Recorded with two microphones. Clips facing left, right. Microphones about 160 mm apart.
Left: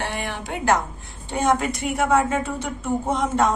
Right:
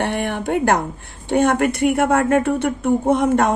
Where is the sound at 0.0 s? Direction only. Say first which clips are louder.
Right 7 dB; 55° right (ahead or behind).